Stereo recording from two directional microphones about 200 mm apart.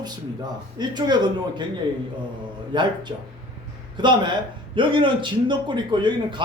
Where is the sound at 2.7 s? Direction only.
20° right (ahead or behind).